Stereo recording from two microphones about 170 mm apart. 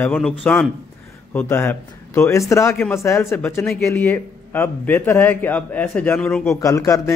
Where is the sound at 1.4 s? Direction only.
15° left (ahead or behind).